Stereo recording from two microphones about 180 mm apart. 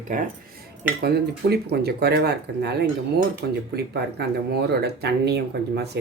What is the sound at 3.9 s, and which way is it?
Speech, 65° right (ahead or behind).